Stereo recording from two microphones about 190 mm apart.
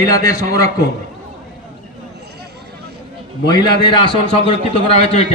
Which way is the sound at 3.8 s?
25° left (ahead or behind).